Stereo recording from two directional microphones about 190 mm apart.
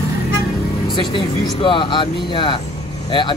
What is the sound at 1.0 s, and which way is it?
Speech, 25° left (ahead or behind).